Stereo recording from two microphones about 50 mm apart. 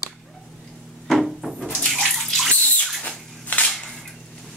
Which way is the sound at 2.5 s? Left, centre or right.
Centre.